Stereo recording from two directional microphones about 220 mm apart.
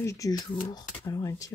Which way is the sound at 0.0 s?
15° left (ahead or behind).